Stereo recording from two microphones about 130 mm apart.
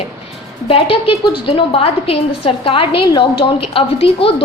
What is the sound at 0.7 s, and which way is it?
A woman's voice, 45° left (ahead or behind).